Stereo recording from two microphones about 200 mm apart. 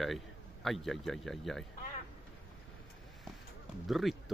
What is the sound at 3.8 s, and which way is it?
Speech, centre (ahead or behind).